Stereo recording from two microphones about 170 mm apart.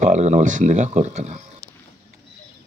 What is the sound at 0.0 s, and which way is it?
Speech, 45° right (ahead or behind).